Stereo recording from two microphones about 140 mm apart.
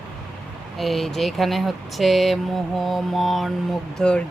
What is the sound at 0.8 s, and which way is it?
Speech, centre (ahead or behind).